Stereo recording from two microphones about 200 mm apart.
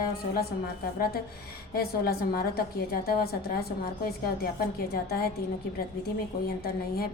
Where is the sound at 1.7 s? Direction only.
50° left (ahead or behind).